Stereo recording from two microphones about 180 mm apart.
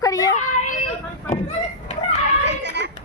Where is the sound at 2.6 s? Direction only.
75° right (ahead or behind).